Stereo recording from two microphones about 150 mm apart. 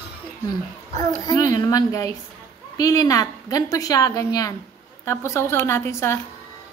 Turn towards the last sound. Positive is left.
turn(degrees=20)  # may be behind; listen again after turning